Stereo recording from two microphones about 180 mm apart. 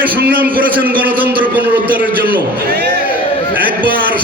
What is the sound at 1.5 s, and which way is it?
Speech, 10° right (ahead or behind).